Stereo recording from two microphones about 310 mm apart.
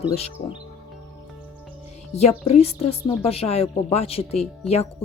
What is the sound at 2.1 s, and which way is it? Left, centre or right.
Speech, left.